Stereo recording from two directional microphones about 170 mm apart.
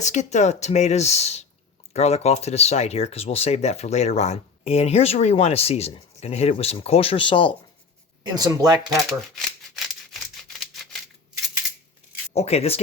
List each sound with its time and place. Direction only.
0.0 s speech: 45° left (ahead or behind)
8.4 s speech: 20° right (ahead or behind)
8.9 s rattle: centre (ahead or behind)
10.6 s a sound: centre (ahead or behind)
12.3 s speech: 40° left (ahead or behind)